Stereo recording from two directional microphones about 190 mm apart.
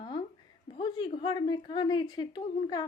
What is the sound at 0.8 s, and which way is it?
A woman's voice, 25° left (ahead or behind).